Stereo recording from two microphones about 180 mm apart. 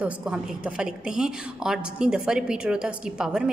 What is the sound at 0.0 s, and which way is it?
A woman's voice, 5° right (ahead or behind).